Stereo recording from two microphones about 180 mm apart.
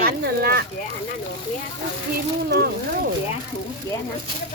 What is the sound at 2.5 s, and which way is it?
Speech, 65° right (ahead or behind).